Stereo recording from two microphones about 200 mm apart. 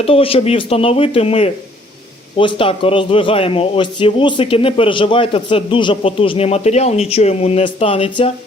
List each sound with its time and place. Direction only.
0.0 s a man's voice: 30° left (ahead or behind)